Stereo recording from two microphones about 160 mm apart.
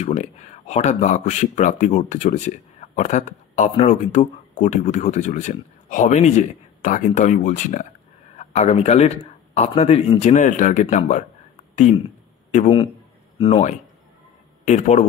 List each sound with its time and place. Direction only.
0.0 s a man's voice: 40° left (ahead or behind)
13.4 s speech: 35° left (ahead or behind)
14.6 s a man's voice: 45° left (ahead or behind)